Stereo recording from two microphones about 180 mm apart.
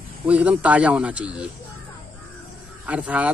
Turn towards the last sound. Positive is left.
turn(degrees=-10)  # may be behind; listen again after turning